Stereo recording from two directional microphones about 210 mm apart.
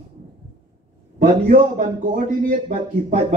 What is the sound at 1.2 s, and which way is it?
A man's voice, 40° right (ahead or behind).